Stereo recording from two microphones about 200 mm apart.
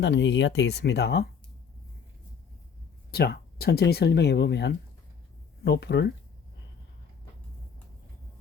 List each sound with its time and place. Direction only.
0.0 s speech: 60° left (ahead or behind)
3.1 s speech: 50° left (ahead or behind)